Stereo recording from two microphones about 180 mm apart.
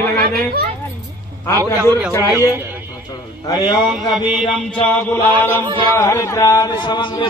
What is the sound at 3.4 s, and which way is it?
Speech, 20° left (ahead or behind).